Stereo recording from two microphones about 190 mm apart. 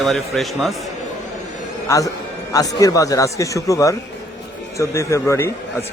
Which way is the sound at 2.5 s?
20° left (ahead or behind).